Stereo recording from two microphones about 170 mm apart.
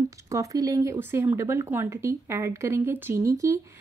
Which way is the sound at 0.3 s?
20° right (ahead or behind).